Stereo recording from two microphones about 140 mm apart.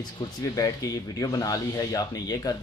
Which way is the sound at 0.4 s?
25° left (ahead or behind).